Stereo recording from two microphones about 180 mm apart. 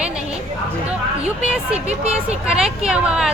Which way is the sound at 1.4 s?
5° right (ahead or behind).